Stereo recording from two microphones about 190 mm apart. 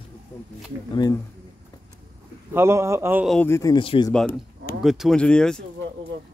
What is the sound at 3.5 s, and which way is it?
Speech, 15° left (ahead or behind).